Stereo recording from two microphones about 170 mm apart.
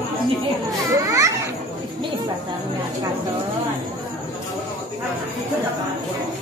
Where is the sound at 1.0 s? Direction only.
20° right (ahead or behind).